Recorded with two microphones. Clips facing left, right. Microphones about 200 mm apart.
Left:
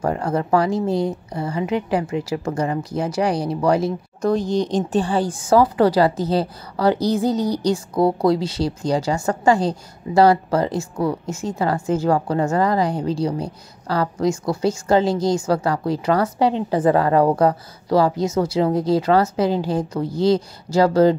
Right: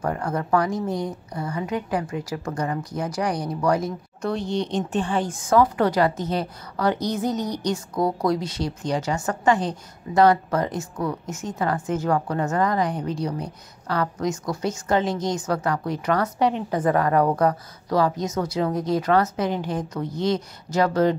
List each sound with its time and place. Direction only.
0.0 s speech: 25° left (ahead or behind)
4.2 s speech: 40° left (ahead or behind)